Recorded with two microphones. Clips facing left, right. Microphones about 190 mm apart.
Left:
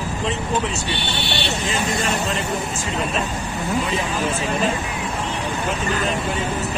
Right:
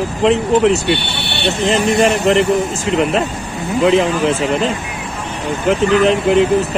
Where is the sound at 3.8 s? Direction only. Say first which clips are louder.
Right 17 dB; 90° right.